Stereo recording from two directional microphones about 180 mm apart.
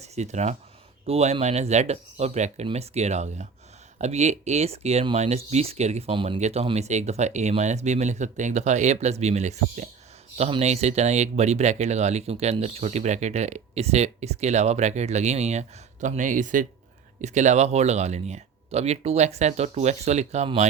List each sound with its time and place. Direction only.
0.0 s speech: 40° right (ahead or behind)